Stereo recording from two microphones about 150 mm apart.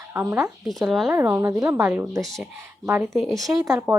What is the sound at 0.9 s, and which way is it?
Speech, centre (ahead or behind).